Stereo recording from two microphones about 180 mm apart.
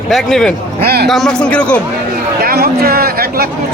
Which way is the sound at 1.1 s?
Centre (ahead or behind).